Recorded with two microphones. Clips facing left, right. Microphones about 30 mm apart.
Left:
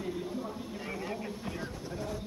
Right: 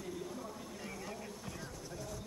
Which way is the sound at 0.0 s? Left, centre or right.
Left.